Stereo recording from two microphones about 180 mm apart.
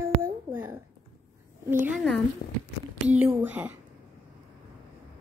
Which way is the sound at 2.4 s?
60° left (ahead or behind).